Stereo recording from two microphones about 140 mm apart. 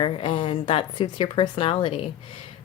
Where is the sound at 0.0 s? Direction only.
40° left (ahead or behind).